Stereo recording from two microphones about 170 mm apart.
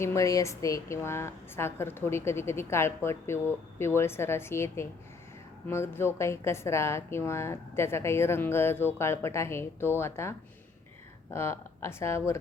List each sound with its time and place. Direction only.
0.0 s a woman's voice: 15° left (ahead or behind)
11.3 s a woman's voice: 15° left (ahead or behind)